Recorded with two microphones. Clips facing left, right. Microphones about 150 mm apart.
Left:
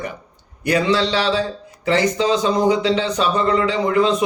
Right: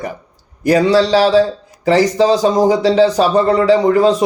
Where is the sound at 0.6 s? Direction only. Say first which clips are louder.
Right 6 dB; 40° right (ahead or behind).